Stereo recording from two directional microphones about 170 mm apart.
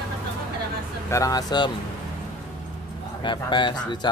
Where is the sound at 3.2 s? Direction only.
25° left (ahead or behind).